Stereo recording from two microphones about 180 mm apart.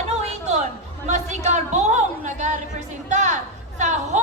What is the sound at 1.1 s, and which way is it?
A woman's voice, 40° right (ahead or behind).